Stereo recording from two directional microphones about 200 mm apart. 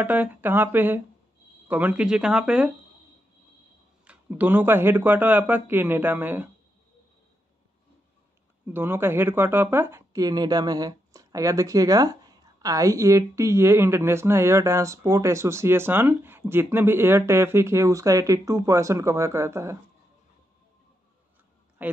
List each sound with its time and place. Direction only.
0.0 s a woman's voice: 10° right (ahead or behind)
4.0 s a woman's voice: 5° right (ahead or behind)
8.6 s a woman's voice: 10° right (ahead or behind)
21.8 s speech: 10° right (ahead or behind)